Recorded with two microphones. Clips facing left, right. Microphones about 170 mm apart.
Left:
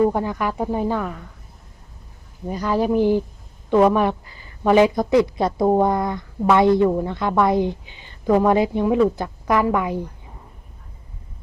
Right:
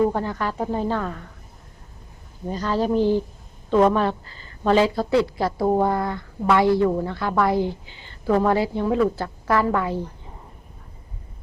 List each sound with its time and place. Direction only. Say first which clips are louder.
0.0 s a woman's voice: left 2 dB; 15° left (ahead or behind)
2.5 s a woman's voice: left 2 dB; 10° left (ahead or behind)